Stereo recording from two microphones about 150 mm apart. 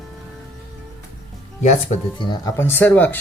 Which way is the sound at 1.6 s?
50° left (ahead or behind).